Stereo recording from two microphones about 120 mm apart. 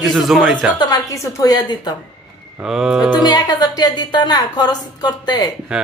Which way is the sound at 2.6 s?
5° right (ahead or behind).